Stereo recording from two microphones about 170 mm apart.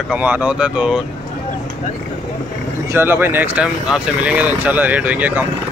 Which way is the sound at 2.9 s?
10° right (ahead or behind).